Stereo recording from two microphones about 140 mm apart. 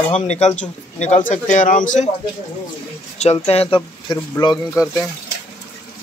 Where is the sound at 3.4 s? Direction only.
45° left (ahead or behind).